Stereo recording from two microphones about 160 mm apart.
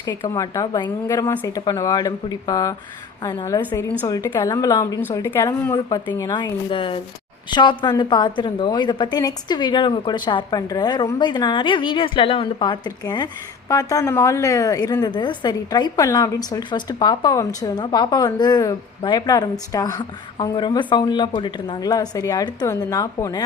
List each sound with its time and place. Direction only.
0.0 s a woman's voice: 25° left (ahead or behind)